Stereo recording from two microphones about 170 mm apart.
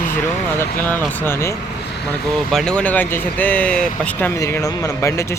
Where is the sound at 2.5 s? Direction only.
5° left (ahead or behind).